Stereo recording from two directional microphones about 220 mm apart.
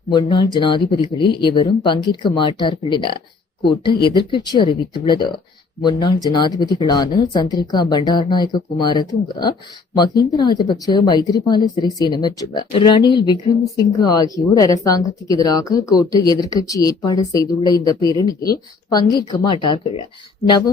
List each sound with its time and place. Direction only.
0.1 s speech: 20° left (ahead or behind)